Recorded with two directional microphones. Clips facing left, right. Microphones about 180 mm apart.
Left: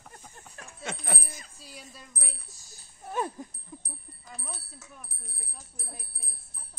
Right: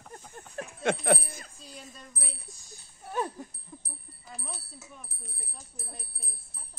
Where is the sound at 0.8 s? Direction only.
70° right (ahead or behind).